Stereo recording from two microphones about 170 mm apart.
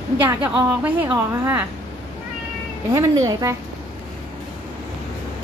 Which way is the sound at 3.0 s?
20° right (ahead or behind).